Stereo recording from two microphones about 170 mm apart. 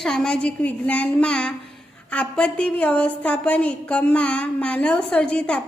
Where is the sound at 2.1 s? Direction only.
5° left (ahead or behind).